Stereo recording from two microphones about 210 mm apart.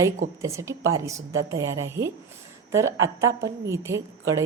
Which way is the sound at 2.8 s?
65° right (ahead or behind).